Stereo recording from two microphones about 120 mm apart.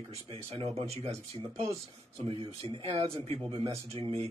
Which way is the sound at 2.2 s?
50° right (ahead or behind).